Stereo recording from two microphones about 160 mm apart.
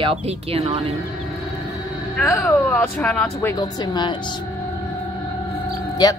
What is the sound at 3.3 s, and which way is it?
Speech, 20° left (ahead or behind).